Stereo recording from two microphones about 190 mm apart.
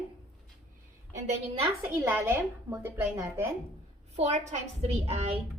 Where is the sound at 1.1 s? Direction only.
35° right (ahead or behind).